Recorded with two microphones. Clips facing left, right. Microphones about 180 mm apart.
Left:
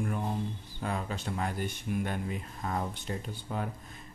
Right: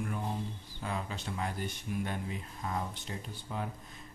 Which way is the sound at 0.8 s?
50° left (ahead or behind).